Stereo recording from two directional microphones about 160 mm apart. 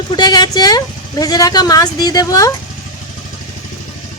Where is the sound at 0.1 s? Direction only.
25° left (ahead or behind).